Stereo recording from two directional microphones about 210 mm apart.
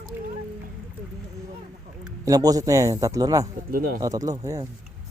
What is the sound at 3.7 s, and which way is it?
Speech, 45° right (ahead or behind).